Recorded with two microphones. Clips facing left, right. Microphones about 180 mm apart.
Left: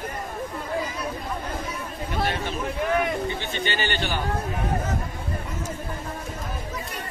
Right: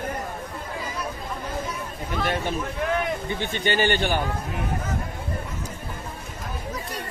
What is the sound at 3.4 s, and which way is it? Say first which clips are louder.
Speech: right 4 dB; 50° right (ahead or behind).